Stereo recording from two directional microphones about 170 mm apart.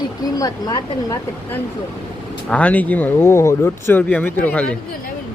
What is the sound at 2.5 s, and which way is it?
Speech, 10° left (ahead or behind).